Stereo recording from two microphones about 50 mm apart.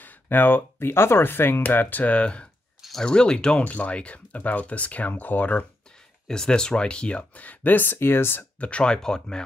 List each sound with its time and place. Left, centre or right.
0.0 s speech: left; by 3.6 s centre
3.6 s speech: left
6.2 s speech: centre; by 8.5 s left
8.5 s speech: left